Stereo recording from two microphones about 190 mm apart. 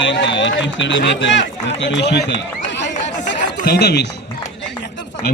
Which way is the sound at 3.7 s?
60° left (ahead or behind).